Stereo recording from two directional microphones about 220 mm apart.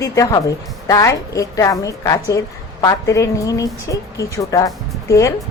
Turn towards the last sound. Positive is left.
turn(degrees=15)  # may be behind; listen again after turning